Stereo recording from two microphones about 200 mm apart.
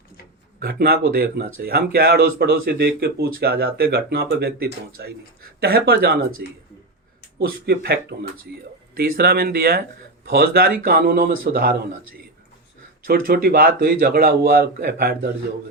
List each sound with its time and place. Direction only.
0.6 s a man's voice: 50° right (ahead or behind)
9.0 s speech: 50° right (ahead or behind)